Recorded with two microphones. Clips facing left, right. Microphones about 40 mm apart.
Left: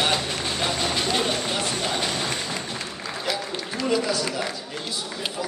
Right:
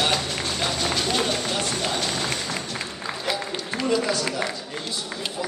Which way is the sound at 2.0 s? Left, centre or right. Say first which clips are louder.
Even; centre.